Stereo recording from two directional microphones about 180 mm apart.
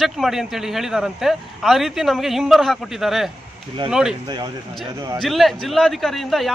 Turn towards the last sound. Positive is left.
turn(degrees=0)  # may be behind; listen again after turning